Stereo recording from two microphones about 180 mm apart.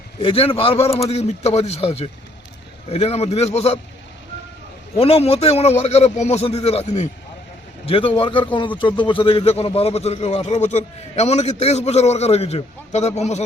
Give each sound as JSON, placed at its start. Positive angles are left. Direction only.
{"t": 0.2, "sound": "a man's voice", "side_deg": 30}
{"t": 4.9, "sound": "a man's voice", "side_deg": 35}